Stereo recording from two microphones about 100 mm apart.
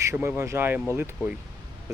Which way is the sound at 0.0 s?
30° right (ahead or behind).